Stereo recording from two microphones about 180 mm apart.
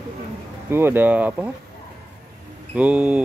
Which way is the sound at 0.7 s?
15° right (ahead or behind).